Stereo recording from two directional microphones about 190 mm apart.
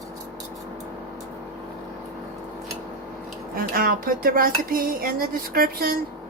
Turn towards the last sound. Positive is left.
turn(degrees=-50)  # may be behind; listen again after turning